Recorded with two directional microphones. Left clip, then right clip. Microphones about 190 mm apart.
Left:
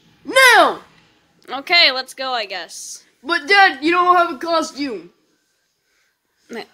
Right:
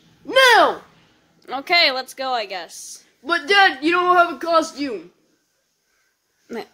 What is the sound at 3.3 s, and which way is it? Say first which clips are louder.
Speech: left 2 dB; 40° left (ahead or behind).